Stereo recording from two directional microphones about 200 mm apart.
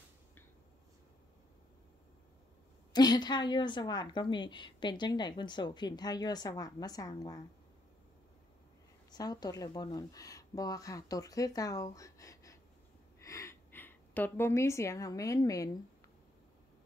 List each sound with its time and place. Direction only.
2.9 s a woman's voice: 20° left (ahead or behind)
9.1 s a woman's voice: 20° left (ahead or behind)